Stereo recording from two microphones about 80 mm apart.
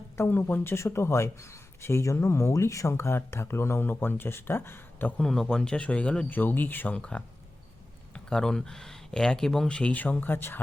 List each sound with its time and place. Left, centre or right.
0.2 s speech: left
5.2 s speech: centre; by 10.6 s left